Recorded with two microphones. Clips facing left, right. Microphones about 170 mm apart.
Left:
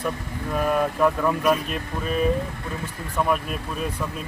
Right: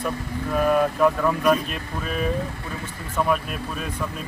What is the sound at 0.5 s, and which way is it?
Speech, centre (ahead or behind).